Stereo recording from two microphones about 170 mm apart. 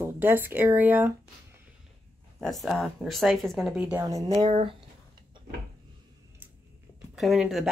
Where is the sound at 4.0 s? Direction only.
15° right (ahead or behind).